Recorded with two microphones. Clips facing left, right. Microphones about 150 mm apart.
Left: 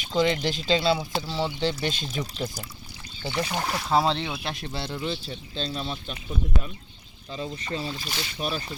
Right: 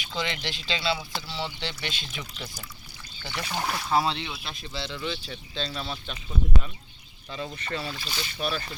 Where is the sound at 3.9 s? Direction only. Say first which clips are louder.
Left 3 dB; 35° left (ahead or behind).